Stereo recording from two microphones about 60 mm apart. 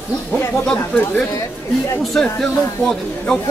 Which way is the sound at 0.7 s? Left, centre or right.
Left.